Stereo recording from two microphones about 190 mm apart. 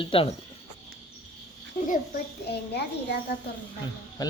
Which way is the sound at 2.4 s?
60° left (ahead or behind).